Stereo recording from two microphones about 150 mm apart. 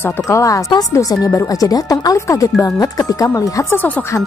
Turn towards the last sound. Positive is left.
turn(degrees=20)  # may be behind; listen again after turning